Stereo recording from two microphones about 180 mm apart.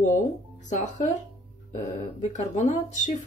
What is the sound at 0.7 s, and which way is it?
Speech, 45° left (ahead or behind).